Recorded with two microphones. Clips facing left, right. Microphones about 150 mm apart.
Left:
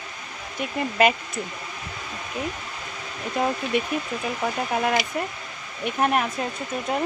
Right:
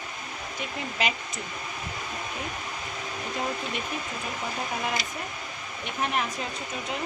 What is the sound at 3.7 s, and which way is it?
Speech, 65° left (ahead or behind).